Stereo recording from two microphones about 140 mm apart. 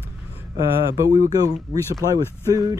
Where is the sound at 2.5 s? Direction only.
25° right (ahead or behind).